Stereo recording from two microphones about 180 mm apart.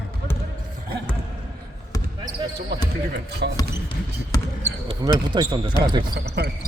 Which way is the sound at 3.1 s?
65° right (ahead or behind).